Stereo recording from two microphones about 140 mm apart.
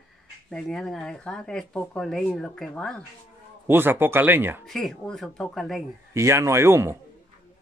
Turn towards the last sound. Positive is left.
turn(degrees=-20)  # may be behind; listen again after turning